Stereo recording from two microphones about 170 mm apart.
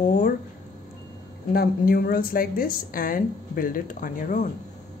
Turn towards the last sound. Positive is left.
turn(degrees=50)  # may be behind; listen again after turning